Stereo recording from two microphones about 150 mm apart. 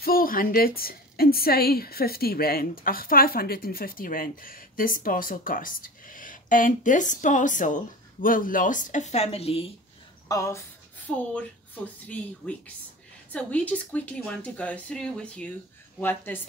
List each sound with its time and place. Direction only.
0.0 s a woman's voice: 75° left (ahead or behind); by 9.7 s 40° left (ahead or behind)
10.2 s speech: 20° left (ahead or behind)
11.1 s a woman's voice: 10° left (ahead or behind)